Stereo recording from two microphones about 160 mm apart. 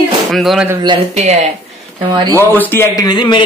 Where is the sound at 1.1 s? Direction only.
45° right (ahead or behind).